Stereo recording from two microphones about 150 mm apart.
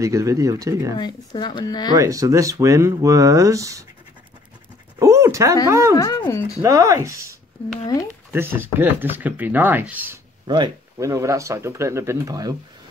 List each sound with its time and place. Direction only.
0.0 s speech: 20° right (ahead or behind)
0.9 s speech: 30° left (ahead or behind)
2.0 s speech: 20° right (ahead or behind)
4.9 s a sound: 20° right (ahead or behind)
5.7 s speech: 20° right (ahead or behind)
5.9 s speech: 20° left (ahead or behind)
6.6 s speech: 20° right (ahead or behind)
10.4 s speech: 30° right (ahead or behind)